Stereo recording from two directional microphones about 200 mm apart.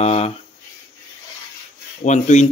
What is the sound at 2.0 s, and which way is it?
Speech, 35° left (ahead or behind).